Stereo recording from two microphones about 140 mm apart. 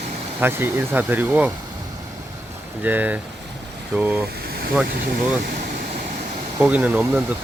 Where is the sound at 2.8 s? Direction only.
10° right (ahead or behind).